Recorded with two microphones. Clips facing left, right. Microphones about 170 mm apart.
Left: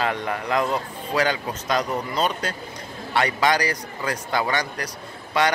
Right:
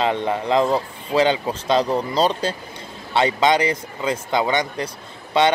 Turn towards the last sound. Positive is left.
turn(degrees=-25)  # may be behind; listen again after turning